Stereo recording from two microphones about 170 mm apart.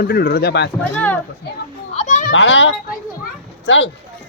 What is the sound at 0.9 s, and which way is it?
Speech, 10° left (ahead or behind).